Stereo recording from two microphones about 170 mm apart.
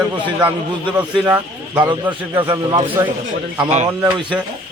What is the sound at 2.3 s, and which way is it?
Speech, 25° right (ahead or behind).